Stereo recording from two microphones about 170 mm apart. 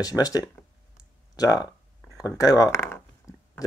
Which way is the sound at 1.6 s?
20° left (ahead or behind).